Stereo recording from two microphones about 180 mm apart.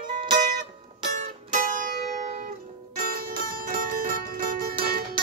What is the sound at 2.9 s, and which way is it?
Music, 55° right (ahead or behind).